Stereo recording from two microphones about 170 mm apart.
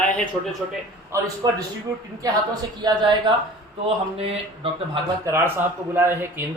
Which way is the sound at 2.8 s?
25° right (ahead or behind).